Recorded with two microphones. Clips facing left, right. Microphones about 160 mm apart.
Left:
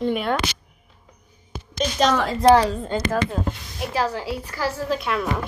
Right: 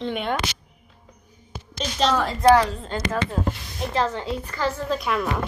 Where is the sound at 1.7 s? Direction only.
10° left (ahead or behind).